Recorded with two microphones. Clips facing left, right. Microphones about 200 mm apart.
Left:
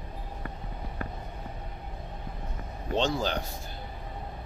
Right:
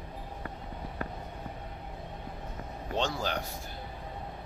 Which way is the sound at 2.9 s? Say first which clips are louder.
Left 4 dB; 25° left (ahead or behind).